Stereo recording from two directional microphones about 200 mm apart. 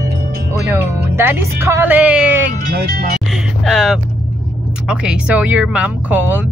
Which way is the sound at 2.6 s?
50° right (ahead or behind).